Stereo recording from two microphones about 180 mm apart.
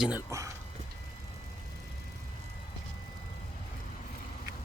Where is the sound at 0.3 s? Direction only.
15° right (ahead or behind).